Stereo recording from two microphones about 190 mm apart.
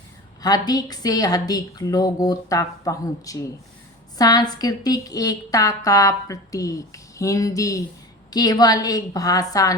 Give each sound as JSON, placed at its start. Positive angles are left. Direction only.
{"t": 0.4, "sound": "a woman's voice", "side_deg": 20}